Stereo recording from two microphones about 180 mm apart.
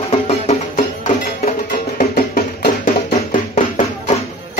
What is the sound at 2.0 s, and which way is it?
Music, 55° left (ahead or behind).